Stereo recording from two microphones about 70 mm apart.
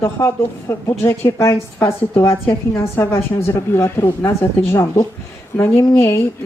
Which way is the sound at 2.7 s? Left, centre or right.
Left.